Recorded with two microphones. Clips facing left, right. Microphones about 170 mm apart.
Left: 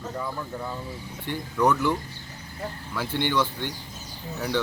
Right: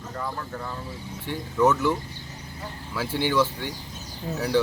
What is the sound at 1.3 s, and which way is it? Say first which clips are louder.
Speech: right 2 dB; 5° right (ahead or behind).